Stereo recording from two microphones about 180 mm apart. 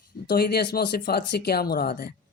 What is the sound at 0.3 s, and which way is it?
Speech, 65° left (ahead or behind).